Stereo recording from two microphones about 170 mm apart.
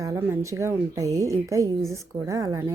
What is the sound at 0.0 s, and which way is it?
A woman's voice, 15° right (ahead or behind).